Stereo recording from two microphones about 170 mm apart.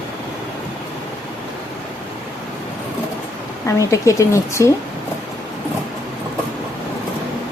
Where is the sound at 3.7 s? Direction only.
20° left (ahead or behind).